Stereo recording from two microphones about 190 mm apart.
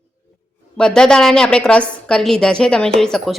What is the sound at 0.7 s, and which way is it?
A woman's voice, 5° left (ahead or behind).